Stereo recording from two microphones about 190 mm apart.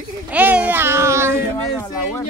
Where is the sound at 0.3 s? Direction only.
10° right (ahead or behind).